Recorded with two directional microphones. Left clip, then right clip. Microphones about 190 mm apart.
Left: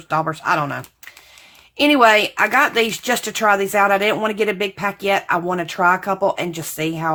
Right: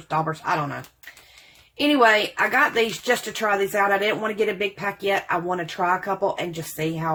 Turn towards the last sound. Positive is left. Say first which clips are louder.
# left 4 dB
turn(degrees=30)  # may be behind; listen again after turning